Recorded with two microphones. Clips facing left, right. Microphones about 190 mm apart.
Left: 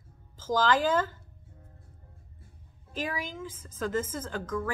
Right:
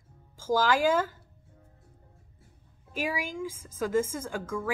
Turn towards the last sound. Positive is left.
turn(degrees=-10)  # may be behind; listen again after turning